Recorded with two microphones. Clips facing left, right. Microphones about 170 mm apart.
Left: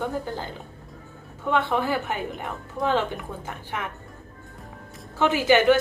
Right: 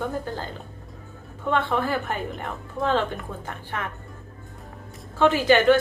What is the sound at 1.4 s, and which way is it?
A woman's voice, 15° left (ahead or behind).